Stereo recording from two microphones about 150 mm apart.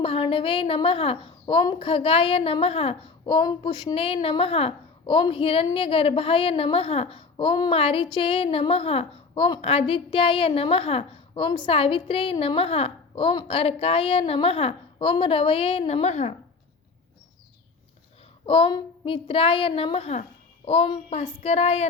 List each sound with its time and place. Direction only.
0.0 s a woman's voice: 40° left (ahead or behind)
18.4 s a woman's voice: 35° left (ahead or behind)